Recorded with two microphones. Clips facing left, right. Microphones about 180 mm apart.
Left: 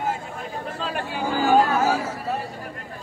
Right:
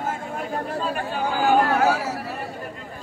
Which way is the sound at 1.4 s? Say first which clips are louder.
Even; 60° right (ahead or behind).